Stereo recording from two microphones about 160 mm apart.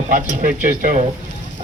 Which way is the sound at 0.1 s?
55° right (ahead or behind).